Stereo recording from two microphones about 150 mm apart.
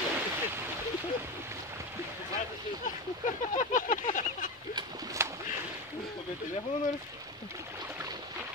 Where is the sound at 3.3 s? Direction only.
60° left (ahead or behind).